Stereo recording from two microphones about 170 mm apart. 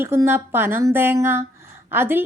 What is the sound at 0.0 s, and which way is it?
A woman's voice, 15° right (ahead or behind).